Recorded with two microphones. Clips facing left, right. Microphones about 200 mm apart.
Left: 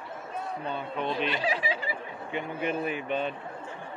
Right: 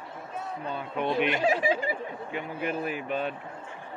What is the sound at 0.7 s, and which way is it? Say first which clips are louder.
Speech: right 3 dB; 10° right (ahead or behind).